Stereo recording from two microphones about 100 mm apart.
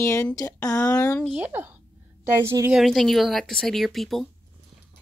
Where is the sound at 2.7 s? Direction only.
Centre (ahead or behind).